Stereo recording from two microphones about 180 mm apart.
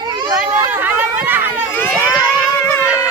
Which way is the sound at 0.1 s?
25° right (ahead or behind).